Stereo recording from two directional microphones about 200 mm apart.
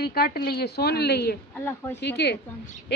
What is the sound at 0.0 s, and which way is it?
A woman's voice, 50° left (ahead or behind).